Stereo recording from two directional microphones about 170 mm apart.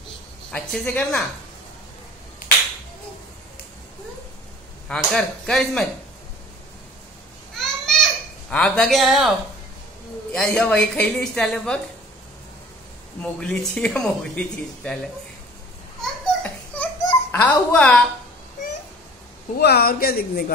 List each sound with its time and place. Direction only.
0.5 s speech: 5° left (ahead or behind)
4.8 s a woman's voice: 5° left (ahead or behind)
7.5 s a sound: centre (ahead or behind)
10.4 s a woman's voice: 5° left (ahead or behind)
13.2 s a woman's voice: 5° left (ahead or behind)
16.0 s a sound: 5° left (ahead or behind)
17.3 s speech: 10° left (ahead or behind)
19.6 s speech: 65° left (ahead or behind)